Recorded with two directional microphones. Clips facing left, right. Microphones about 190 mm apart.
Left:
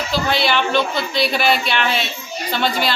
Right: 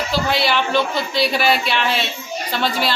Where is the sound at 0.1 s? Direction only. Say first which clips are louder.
Left 1 dB; 5° right (ahead or behind).